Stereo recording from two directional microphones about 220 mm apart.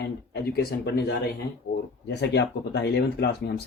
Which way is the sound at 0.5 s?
45° left (ahead or behind).